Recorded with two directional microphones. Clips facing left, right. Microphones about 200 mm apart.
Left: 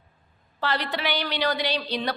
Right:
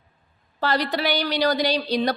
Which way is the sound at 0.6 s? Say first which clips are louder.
Right 4 dB; 40° right (ahead or behind).